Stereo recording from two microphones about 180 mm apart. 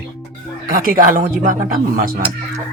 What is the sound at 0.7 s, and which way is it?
Speech, 50° right (ahead or behind).